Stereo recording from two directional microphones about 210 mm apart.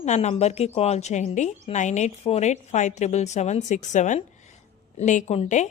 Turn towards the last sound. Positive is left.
turn(degrees=35)  # may be behind; listen again after turning